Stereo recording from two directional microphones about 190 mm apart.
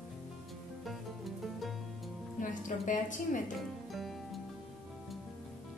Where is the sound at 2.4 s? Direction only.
40° left (ahead or behind).